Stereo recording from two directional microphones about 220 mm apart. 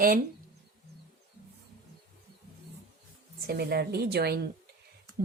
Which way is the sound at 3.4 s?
45° right (ahead or behind).